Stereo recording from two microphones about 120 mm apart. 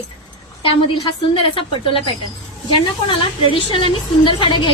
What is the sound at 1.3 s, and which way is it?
Speech, 45° left (ahead or behind).